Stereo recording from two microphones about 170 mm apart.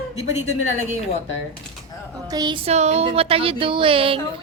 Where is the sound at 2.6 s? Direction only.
40° right (ahead or behind).